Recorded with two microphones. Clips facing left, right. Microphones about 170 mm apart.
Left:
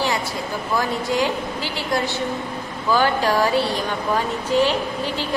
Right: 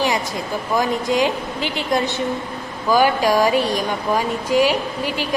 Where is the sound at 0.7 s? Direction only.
20° right (ahead or behind).